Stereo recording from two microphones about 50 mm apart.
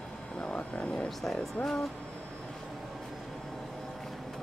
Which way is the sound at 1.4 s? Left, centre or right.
Centre.